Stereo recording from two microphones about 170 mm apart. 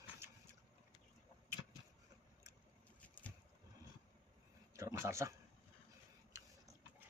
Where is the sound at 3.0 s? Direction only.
10° left (ahead or behind).